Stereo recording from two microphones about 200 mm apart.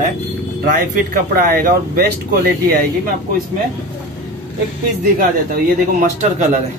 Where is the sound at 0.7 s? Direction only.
45° right (ahead or behind).